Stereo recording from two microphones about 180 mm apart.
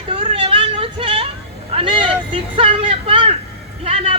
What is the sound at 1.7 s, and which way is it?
Vehicle, 30° right (ahead or behind).